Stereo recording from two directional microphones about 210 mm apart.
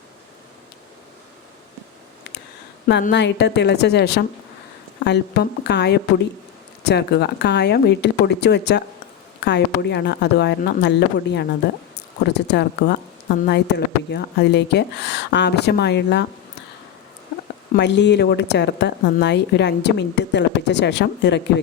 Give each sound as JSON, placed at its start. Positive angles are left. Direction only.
{"t": 2.8, "sound": "speech", "side_deg": 50}
{"t": 12.5, "sound": "speech", "side_deg": 55}
{"t": 17.7, "sound": "speech", "side_deg": 55}